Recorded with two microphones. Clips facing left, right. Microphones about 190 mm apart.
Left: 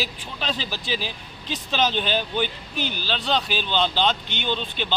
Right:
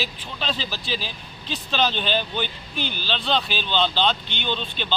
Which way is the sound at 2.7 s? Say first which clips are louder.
Left 1 dB; 45° left (ahead or behind).